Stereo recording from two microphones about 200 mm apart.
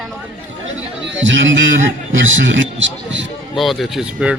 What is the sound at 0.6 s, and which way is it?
A man's voice, 70° right (ahead or behind).